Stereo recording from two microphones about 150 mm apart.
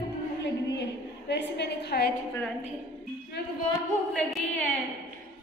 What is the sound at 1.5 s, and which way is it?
Speech, 90° left.